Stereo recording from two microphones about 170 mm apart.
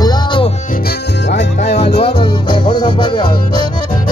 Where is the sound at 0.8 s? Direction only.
90° left.